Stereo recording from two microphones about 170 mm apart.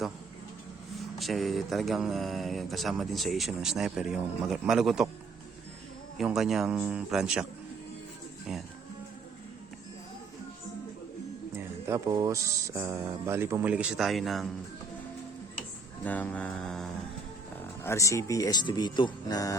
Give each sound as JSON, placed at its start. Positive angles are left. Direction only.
{"t": 0.9, "sound": "speech", "side_deg": 0}
{"t": 6.1, "sound": "speech", "side_deg": 0}
{"t": 11.5, "sound": "speech", "side_deg": -15}
{"t": 16.0, "sound": "speech", "side_deg": 10}
{"t": 17.8, "sound": "speech", "side_deg": 15}